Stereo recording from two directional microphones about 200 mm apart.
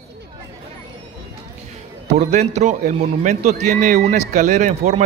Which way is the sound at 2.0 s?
35° right (ahead or behind).